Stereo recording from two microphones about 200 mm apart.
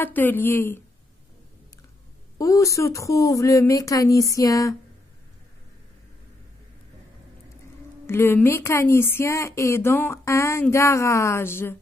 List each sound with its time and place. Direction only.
0.0 s speech: 10° left (ahead or behind)
2.3 s speech: 15° left (ahead or behind)
8.1 s speech: 10° left (ahead or behind)